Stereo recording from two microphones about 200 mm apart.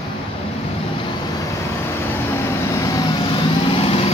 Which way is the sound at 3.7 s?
30° left (ahead or behind).